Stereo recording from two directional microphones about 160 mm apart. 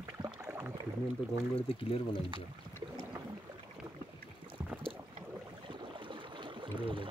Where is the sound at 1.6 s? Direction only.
35° left (ahead or behind).